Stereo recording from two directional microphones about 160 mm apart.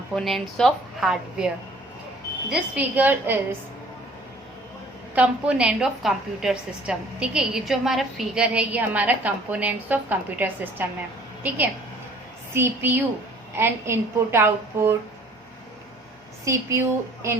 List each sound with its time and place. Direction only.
0.1 s a woman's voice: centre (ahead or behind)
2.5 s a woman's voice: 10° right (ahead or behind)
5.1 s a woman's voice: 10° right (ahead or behind)
16.4 s a woman's voice: 20° right (ahead or behind)